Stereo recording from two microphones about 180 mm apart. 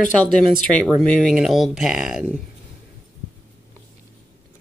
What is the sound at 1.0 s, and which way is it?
Speech, centre (ahead or behind).